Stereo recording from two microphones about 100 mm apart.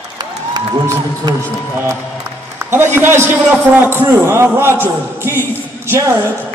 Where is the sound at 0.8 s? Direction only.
30° right (ahead or behind).